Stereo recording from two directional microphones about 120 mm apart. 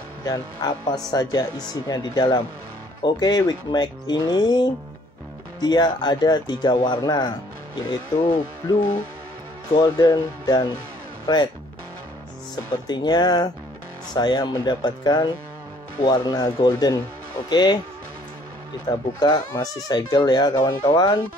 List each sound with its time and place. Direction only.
0.2 s speech: 30° left (ahead or behind)
9.7 s speech: 35° left (ahead or behind)
12.8 s speech: 35° left (ahead or behind)
18.9 s speech: 35° left (ahead or behind)